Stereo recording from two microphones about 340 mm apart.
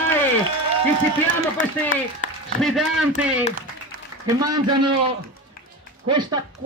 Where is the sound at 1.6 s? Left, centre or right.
Left.